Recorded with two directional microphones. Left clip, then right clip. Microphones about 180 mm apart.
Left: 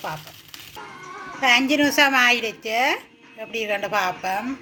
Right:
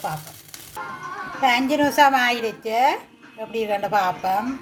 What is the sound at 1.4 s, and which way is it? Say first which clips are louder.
Speech: left 1 dB; 10° left (ahead or behind).